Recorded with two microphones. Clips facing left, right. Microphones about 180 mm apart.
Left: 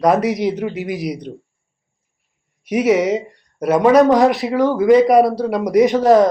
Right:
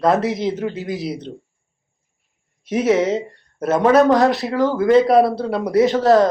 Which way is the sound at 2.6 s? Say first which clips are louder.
Left 2 dB; 10° left (ahead or behind).